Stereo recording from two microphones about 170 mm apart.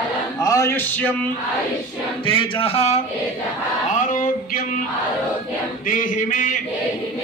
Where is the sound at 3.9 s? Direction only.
50° left (ahead or behind).